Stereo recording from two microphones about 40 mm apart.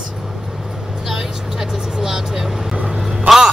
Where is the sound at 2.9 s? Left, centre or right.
Centre.